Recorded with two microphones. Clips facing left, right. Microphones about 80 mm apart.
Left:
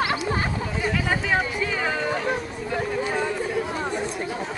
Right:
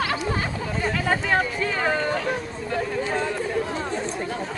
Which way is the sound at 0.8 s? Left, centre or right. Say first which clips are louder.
Right 1 dB; centre.